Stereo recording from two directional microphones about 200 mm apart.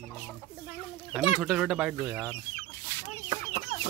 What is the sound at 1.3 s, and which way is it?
Speech, centre (ahead or behind).